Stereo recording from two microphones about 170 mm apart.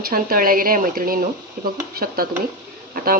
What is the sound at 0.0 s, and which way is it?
Speech, 60° right (ahead or behind).